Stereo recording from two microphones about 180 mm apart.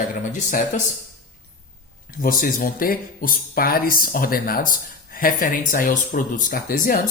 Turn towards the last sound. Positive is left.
turn(degrees=50)  # may be behind; listen again after turning